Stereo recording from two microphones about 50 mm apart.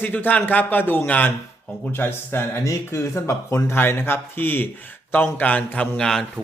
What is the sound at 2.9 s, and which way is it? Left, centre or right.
A man's voice, left.